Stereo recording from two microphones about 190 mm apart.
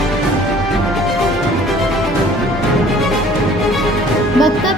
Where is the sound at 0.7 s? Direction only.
Centre (ahead or behind).